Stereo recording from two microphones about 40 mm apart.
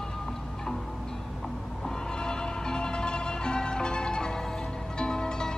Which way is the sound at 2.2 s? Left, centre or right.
Centre.